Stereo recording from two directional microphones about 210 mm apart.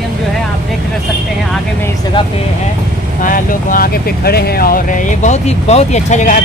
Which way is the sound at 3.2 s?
40° left (ahead or behind).